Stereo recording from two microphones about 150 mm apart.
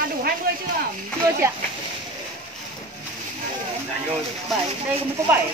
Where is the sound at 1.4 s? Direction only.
20° right (ahead or behind).